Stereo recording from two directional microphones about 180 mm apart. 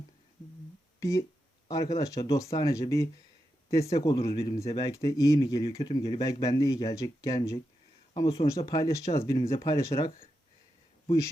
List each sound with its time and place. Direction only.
0.9 s speech: 20° left (ahead or behind)
4.3 s speech: 35° left (ahead or behind)
4.7 s speech: 20° left (ahead or behind)